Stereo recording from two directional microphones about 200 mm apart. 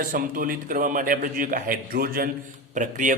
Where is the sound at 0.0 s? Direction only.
45° right (ahead or behind).